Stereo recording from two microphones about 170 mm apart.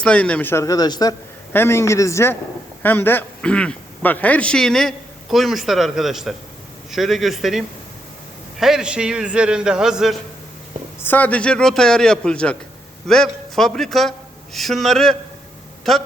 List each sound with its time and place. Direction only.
0.0 s a man's voice: 5° left (ahead or behind)
11.0 s a man's voice: 10° left (ahead or behind)